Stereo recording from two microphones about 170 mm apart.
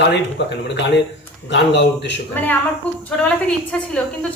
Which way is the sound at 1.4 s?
90° left.